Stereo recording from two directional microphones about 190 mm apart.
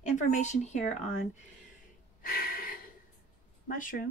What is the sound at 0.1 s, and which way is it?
Speech, 40° left (ahead or behind).